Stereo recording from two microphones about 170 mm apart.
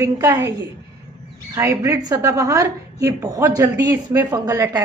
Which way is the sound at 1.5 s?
15° right (ahead or behind).